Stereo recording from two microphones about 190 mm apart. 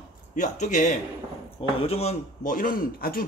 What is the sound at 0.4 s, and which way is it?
A man's voice, 40° left (ahead or behind).